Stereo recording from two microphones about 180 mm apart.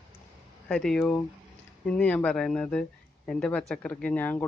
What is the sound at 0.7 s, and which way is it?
Speech, 5° left (ahead or behind).